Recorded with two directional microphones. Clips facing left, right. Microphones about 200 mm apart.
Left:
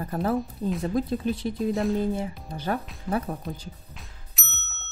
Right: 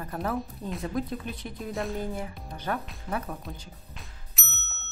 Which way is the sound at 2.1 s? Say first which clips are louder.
Left 5 dB; 30° left (ahead or behind).